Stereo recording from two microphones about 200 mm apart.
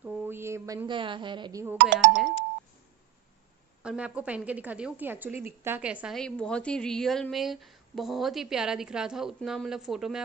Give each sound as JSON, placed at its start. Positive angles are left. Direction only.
{"t": 0.0, "sound": "music", "side_deg": -10}
{"t": 0.8, "sound": "speech", "side_deg": -25}
{"t": 1.8, "sound": "speech", "side_deg": -65}
{"t": 3.8, "sound": "a woman's voice", "side_deg": -5}